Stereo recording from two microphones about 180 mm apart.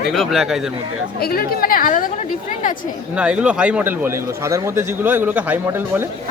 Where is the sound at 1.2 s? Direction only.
55° left (ahead or behind).